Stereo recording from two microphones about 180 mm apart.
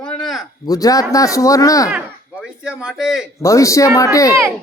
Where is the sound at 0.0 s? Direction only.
5° left (ahead or behind).